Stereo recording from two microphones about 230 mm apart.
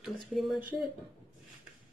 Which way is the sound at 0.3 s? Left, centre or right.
Centre.